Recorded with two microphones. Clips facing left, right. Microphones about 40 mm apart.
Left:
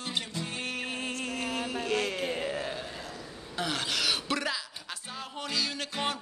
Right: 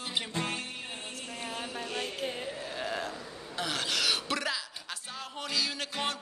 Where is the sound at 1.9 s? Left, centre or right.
Left.